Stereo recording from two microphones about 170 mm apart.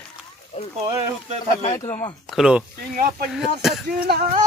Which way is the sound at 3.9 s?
60° right (ahead or behind).